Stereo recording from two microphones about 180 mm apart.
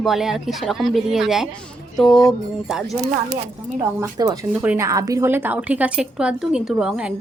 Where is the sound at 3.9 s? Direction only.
20° right (ahead or behind).